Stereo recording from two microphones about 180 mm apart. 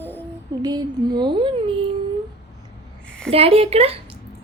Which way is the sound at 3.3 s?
35° right (ahead or behind).